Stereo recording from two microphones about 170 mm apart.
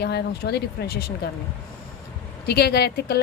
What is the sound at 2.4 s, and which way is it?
Speech, 70° left (ahead or behind).